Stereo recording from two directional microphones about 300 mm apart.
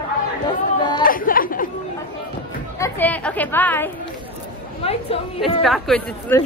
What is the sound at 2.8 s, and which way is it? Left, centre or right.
Speech, centre.